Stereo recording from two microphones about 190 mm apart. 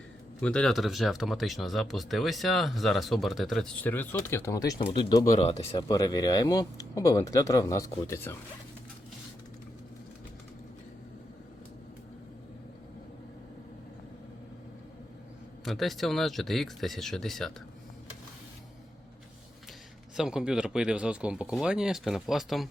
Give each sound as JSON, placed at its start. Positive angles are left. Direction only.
{"t": 0.4, "sound": "speech", "side_deg": 5}
{"t": 5.9, "sound": "speech", "side_deg": 20}
{"t": 15.6, "sound": "speech", "side_deg": 0}
{"t": 20.1, "sound": "speech", "side_deg": -5}